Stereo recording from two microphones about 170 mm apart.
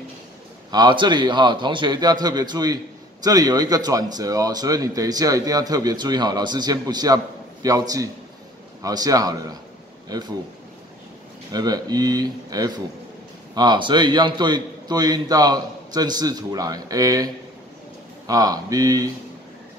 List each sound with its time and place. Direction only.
0.7 s a man's voice: 25° right (ahead or behind)
11.5 s a man's voice: 20° right (ahead or behind)